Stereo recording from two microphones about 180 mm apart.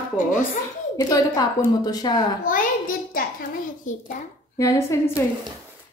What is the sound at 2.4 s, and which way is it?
A child's voice, 50° left (ahead or behind).